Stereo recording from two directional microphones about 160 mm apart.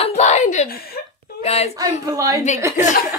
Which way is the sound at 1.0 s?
75° left (ahead or behind).